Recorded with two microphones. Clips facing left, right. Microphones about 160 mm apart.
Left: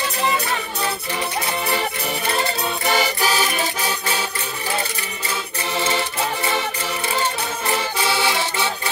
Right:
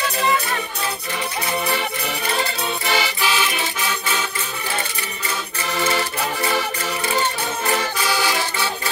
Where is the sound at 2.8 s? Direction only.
45° left (ahead or behind).